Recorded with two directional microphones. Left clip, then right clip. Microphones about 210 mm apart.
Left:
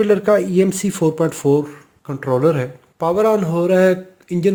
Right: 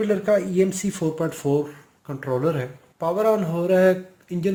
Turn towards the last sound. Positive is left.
turn(degrees=40)  # may be behind; listen again after turning